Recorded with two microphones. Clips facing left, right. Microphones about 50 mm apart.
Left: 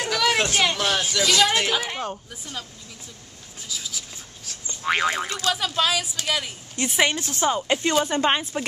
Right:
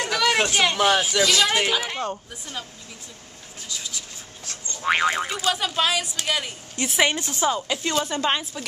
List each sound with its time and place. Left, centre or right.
0.0 s a sound: centre
0.7 s speech: centre
3.6 s writing: centre
4.8 s speech: centre
7.1 s speech: centre
7.5 s speech: left